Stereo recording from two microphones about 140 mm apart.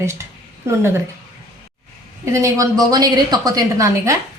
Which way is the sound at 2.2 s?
20° right (ahead or behind).